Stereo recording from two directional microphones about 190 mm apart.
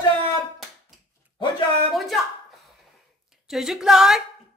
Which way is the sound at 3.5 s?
Centre (ahead or behind).